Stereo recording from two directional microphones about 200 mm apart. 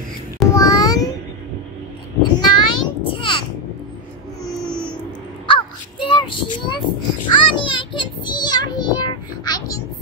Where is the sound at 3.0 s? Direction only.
25° left (ahead or behind).